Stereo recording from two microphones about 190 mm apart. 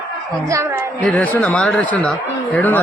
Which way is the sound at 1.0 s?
10° left (ahead or behind).